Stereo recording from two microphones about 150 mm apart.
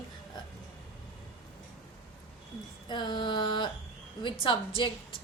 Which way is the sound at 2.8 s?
30° left (ahead or behind).